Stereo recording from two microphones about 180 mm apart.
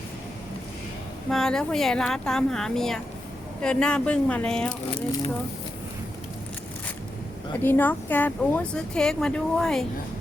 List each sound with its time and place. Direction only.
1.3 s speech: 5° left (ahead or behind)
4.9 s speech: 30° left (ahead or behind)
7.6 s speech: 10° left (ahead or behind)